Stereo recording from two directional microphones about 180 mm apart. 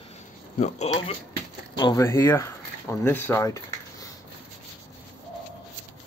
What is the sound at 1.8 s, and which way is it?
Speech, 20° left (ahead or behind).